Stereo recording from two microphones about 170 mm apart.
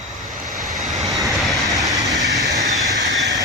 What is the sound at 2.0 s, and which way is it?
Vehicle, 20° right (ahead or behind).